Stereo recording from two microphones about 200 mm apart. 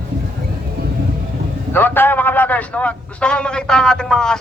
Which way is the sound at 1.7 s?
10° left (ahead or behind).